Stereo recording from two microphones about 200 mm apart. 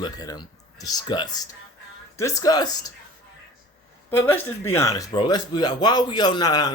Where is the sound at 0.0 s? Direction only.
20° left (ahead or behind).